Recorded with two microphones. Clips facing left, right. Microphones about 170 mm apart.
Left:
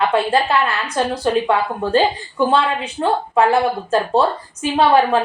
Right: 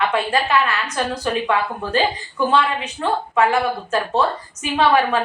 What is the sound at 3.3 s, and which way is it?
Speech, 30° left (ahead or behind).